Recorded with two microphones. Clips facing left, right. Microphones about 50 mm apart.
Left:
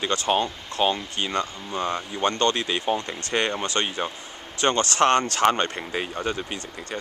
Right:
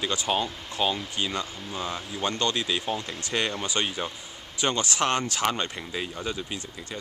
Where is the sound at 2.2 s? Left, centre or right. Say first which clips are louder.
Left 5 dB; left.